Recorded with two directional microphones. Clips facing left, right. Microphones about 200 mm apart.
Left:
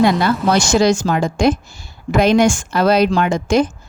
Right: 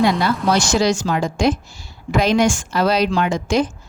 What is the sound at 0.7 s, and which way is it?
A woman's voice, 50° left (ahead or behind).